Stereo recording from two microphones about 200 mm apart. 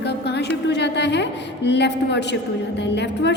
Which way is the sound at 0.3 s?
60° left (ahead or behind).